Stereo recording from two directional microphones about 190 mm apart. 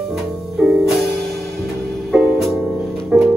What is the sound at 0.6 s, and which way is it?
Music, centre (ahead or behind).